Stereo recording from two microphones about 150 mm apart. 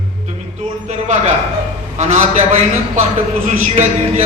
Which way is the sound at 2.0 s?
50° right (ahead or behind).